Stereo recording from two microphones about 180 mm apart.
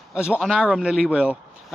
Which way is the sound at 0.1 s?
5° right (ahead or behind).